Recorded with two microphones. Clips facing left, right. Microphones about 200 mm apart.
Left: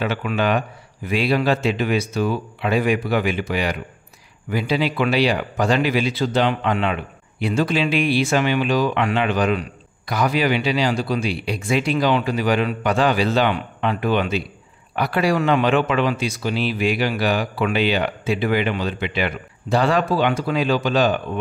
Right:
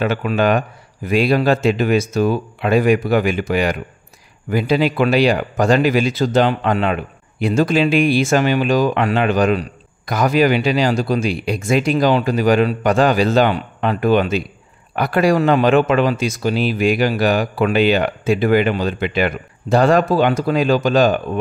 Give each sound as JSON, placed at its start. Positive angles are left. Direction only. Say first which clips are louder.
{"t": 0.0, "sound": "speech", "louder": "right 4 dB", "side_deg": -45}